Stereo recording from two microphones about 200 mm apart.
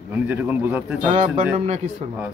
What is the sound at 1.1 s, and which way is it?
Speech, 30° right (ahead or behind).